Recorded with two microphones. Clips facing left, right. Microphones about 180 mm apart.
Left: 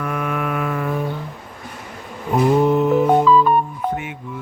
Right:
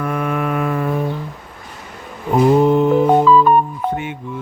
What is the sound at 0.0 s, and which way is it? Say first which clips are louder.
Mantra: right 3 dB; 35° right (ahead or behind).